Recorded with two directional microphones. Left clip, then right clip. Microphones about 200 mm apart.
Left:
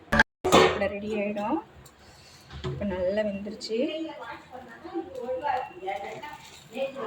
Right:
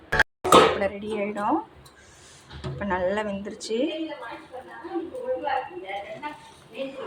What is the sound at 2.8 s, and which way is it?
Speech, centre (ahead or behind).